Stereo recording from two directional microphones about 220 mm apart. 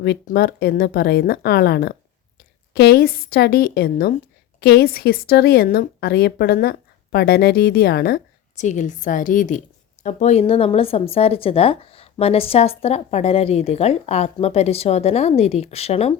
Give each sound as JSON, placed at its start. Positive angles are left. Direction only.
{"t": 0.0, "sound": "a woman's voice", "side_deg": 45}